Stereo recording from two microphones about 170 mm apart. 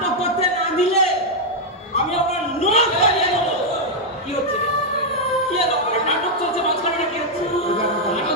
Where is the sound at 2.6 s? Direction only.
40° left (ahead or behind).